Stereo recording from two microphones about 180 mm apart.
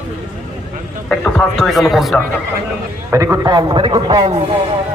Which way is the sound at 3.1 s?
15° right (ahead or behind).